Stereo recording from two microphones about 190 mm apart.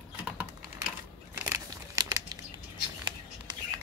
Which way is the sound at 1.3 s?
15° right (ahead or behind).